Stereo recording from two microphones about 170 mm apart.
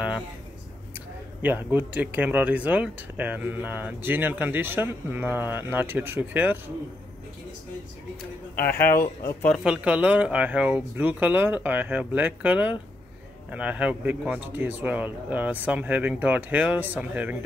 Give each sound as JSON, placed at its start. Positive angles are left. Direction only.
{"t": 1.4, "sound": "speech", "side_deg": -10}
{"t": 8.5, "sound": "speech", "side_deg": 10}
{"t": 9.5, "sound": "speech", "side_deg": 0}